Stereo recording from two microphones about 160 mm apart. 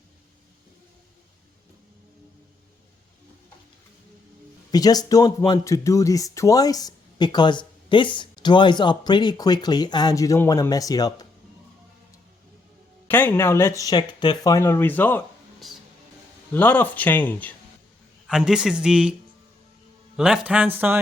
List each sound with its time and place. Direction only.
4.7 s speech: 25° left (ahead or behind)
13.1 s speech: 15° left (ahead or behind)
16.5 s speech: 10° left (ahead or behind)
18.3 s a man's voice: 5° right (ahead or behind)
20.1 s speech: 5° right (ahead or behind)